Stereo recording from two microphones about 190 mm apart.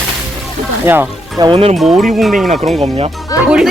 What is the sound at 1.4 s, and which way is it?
Speech, 30° right (ahead or behind).